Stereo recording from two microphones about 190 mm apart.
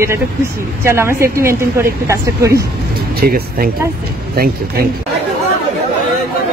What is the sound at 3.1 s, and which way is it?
Speech, 55° right (ahead or behind).